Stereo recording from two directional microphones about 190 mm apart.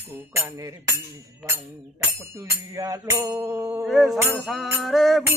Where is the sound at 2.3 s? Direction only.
15° right (ahead or behind).